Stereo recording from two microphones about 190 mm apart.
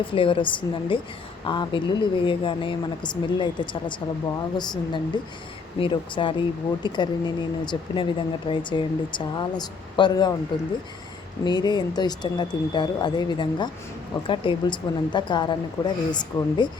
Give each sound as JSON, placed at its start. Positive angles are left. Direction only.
{"t": 0.1, "sound": "a woman's voice", "side_deg": 25}
{"t": 11.4, "sound": "a woman's voice", "side_deg": 20}